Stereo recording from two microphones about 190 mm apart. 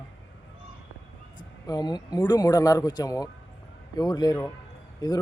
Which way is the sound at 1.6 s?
20° left (ahead or behind).